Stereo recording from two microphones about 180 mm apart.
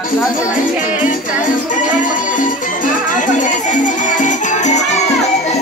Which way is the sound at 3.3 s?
45° left (ahead or behind).